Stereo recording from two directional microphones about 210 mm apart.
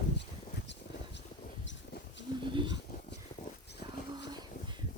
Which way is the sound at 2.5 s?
20° right (ahead or behind).